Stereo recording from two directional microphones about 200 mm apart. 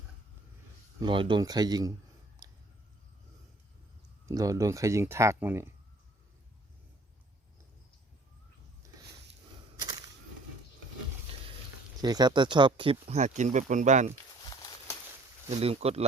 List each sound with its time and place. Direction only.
0.9 s speech: 25° right (ahead or behind)
2.4 s a sound: 20° right (ahead or behind)
4.3 s speech: 15° right (ahead or behind)
8.8 s a sound: 15° right (ahead or behind)
12.0 s speech: 20° right (ahead or behind); by 14.1 s 40° right (ahead or behind)
15.4 s speech: 30° right (ahead or behind)